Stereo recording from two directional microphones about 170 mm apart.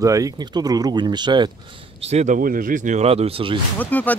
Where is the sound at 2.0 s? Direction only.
45° right (ahead or behind).